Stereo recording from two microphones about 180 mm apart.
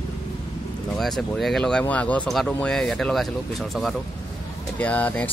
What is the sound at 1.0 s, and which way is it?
Speech, centre (ahead or behind).